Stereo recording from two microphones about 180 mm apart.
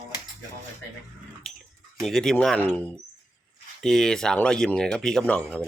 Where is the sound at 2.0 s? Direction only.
Centre (ahead or behind).